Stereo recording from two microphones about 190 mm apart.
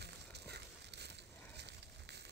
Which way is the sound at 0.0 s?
60° right (ahead or behind).